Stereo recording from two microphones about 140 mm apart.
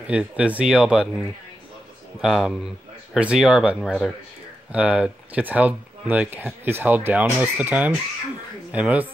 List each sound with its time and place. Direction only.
0.0 s speech: 10° right (ahead or behind)
2.2 s speech: 5° right (ahead or behind)